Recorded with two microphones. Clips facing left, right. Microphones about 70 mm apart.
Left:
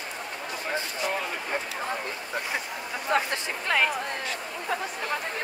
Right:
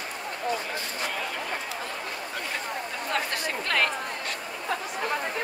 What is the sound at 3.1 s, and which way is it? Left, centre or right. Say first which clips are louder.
Chatter: left 4 dB; centre.